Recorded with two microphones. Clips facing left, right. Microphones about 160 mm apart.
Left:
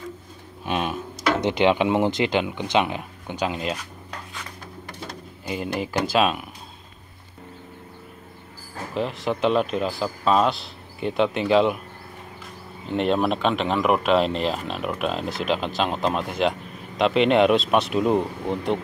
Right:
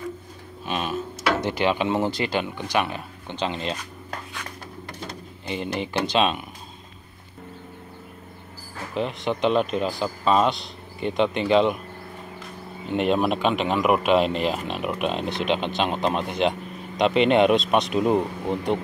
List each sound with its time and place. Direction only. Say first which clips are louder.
0.7 s a sound: left 1 dB; 15° left (ahead or behind)
1.4 s speech: left 3 dB; 20° left (ahead or behind)
5.0 s speech: left 1 dB; 5° left (ahead or behind)
8.9 s speech: even; centre (ahead or behind)
12.9 s speech: even; 5° right (ahead or behind)